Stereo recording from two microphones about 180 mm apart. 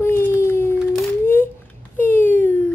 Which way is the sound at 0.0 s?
10° left (ahead or behind).